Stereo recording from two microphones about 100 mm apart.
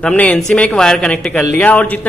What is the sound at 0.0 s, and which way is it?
Speech, 10° left (ahead or behind).